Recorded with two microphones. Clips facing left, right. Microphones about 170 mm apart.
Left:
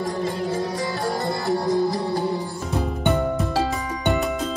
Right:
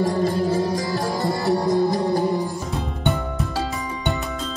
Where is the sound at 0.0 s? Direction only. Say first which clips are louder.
Right 5 dB; 40° right (ahead or behind).